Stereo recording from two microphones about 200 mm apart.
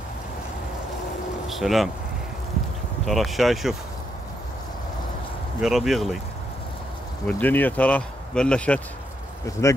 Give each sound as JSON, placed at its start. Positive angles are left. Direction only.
{"t": 1.5, "sound": "speech", "side_deg": 0}
{"t": 3.1, "sound": "speech", "side_deg": 0}
{"t": 5.6, "sound": "speech", "side_deg": 0}
{"t": 7.2, "sound": "speech", "side_deg": 10}